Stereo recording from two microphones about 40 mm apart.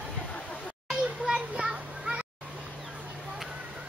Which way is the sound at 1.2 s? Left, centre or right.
Right.